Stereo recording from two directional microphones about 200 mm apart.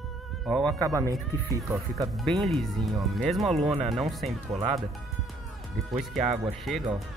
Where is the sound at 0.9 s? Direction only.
15° right (ahead or behind).